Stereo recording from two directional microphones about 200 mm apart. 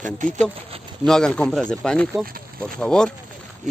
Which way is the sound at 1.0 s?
5° left (ahead or behind).